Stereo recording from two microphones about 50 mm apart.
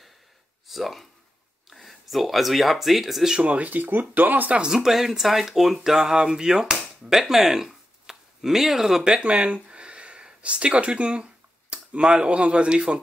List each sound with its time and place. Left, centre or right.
0.7 s speech: centre
3.3 s speech: right
4.6 s speech: centre
9.2 s speech: right
11.7 s a sound: right
12.1 s a man's voice: centre